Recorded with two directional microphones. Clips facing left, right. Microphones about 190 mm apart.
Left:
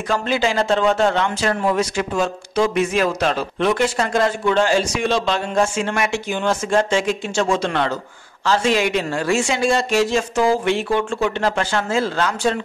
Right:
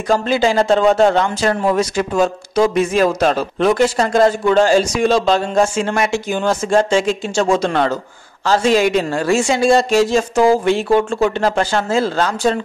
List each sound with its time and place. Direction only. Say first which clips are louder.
0.1 s speech: right 5 dB; 35° right (ahead or behind)